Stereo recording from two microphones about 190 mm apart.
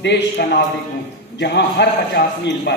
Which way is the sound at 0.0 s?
65° left (ahead or behind).